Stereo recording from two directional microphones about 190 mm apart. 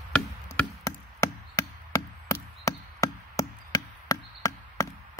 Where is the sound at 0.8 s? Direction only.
20° left (ahead or behind).